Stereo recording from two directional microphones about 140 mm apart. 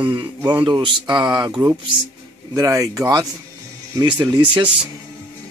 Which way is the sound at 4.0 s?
30° right (ahead or behind).